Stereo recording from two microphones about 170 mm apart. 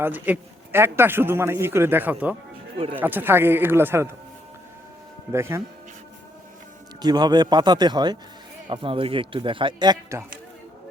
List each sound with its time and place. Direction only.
0.0 s a man's voice: 10° right (ahead or behind)
2.7 s speech: 35° right (ahead or behind)
3.0 s a man's voice: 10° right (ahead or behind)
5.3 s a man's voice: 15° right (ahead or behind)
7.0 s a man's voice: 25° right (ahead or behind)